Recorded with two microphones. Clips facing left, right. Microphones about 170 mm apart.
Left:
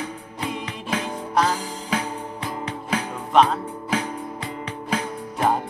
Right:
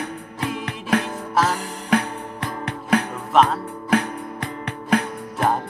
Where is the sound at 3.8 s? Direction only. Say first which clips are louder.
Right 6 dB; 60° right (ahead or behind).